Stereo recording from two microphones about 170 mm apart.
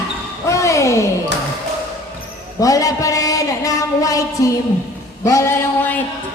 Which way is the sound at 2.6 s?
20° left (ahead or behind).